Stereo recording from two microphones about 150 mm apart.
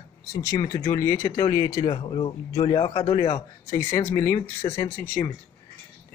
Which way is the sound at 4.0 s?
15° left (ahead or behind).